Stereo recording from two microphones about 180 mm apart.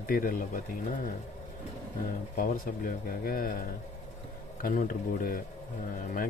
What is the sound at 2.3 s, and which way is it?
Speech, 50° left (ahead or behind).